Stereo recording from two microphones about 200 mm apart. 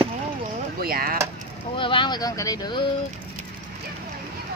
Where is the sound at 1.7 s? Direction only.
25° left (ahead or behind).